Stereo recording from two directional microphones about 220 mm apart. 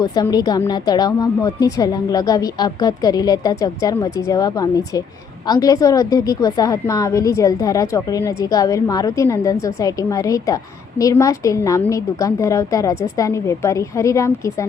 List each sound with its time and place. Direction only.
0.0 s a woman's voice: 15° left (ahead or behind)